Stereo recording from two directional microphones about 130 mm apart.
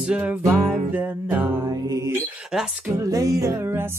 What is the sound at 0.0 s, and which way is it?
Music, 10° right (ahead or behind).